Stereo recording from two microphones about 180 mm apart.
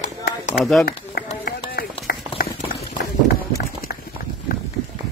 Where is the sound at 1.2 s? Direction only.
60° left (ahead or behind).